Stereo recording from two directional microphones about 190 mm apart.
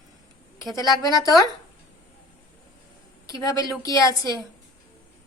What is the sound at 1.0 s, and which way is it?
Speech, 20° left (ahead or behind).